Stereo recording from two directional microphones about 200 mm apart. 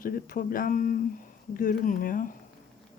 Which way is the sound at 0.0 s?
45° left (ahead or behind).